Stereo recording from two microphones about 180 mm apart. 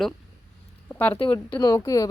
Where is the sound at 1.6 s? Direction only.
20° left (ahead or behind).